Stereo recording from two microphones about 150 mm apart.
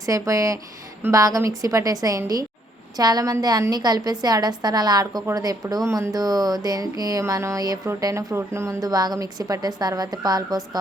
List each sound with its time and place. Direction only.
0.0 s a woman's voice: 20° right (ahead or behind)